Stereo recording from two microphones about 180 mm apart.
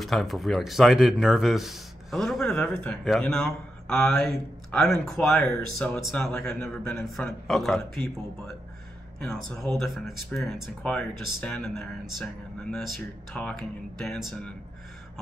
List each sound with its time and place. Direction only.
0.0 s speech: centre (ahead or behind)
9.2 s speech: centre (ahead or behind)